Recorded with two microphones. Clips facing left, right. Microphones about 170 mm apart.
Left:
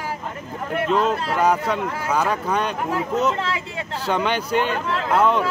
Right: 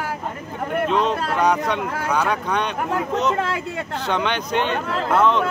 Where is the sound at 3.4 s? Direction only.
55° right (ahead or behind).